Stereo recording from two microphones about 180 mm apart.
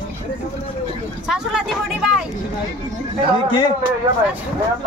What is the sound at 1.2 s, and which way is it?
Speech, 5° right (ahead or behind).